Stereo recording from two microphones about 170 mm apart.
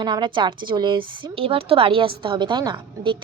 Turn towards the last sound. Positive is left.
turn(degrees=-25)  # may be behind; listen again after turning